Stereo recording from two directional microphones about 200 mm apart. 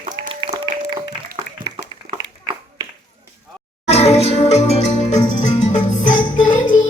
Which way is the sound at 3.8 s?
30° left (ahead or behind).